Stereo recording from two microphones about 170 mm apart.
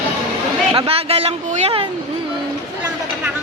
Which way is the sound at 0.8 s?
35° right (ahead or behind).